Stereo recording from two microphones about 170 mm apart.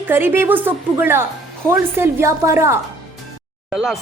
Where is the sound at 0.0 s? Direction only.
10° right (ahead or behind).